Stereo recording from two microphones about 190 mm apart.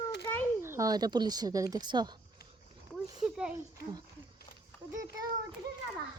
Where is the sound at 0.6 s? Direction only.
15° right (ahead or behind).